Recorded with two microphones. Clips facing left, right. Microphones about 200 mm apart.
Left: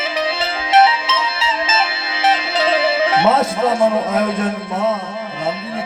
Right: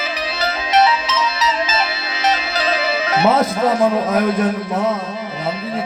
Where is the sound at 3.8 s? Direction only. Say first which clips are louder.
Even; 25° left (ahead or behind).